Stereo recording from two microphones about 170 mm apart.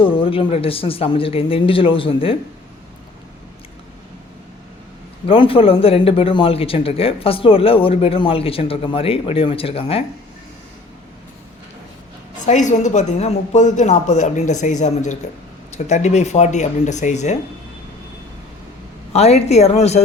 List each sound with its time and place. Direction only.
0.0 s a man's voice: 30° left (ahead or behind)
5.2 s a man's voice: 30° left (ahead or behind)
12.5 s a woman's voice: 45° left (ahead or behind)
19.1 s a man's voice: 40° left (ahead or behind)